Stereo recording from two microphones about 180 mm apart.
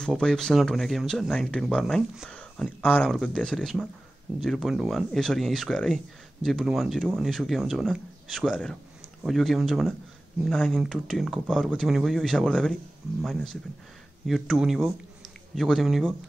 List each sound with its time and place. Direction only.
0.0 s speech: 5° left (ahead or behind)